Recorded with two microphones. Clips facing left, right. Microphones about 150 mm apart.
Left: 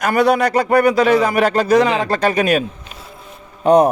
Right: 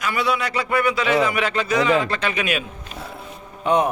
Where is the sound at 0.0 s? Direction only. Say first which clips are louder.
Left 8 dB; 45° left (ahead or behind).